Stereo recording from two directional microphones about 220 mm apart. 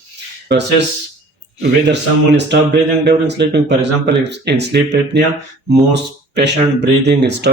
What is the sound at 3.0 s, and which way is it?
Speech, 50° right (ahead or behind).